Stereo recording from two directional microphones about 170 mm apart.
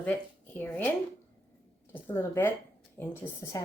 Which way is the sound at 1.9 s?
10° left (ahead or behind).